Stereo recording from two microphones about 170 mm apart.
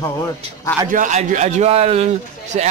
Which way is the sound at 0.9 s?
50° right (ahead or behind).